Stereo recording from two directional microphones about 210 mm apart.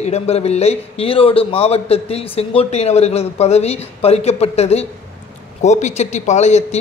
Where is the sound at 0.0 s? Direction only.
30° left (ahead or behind).